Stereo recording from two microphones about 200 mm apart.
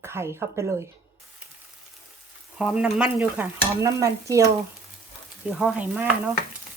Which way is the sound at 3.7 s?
15° right (ahead or behind).